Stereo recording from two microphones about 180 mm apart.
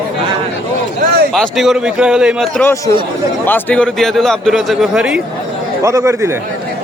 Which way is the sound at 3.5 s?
10° left (ahead or behind).